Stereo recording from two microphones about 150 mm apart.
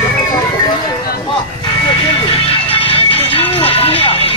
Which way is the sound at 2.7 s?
35° left (ahead or behind).